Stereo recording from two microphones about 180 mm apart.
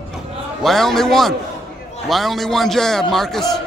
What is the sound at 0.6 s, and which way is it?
A man's voice, centre (ahead or behind).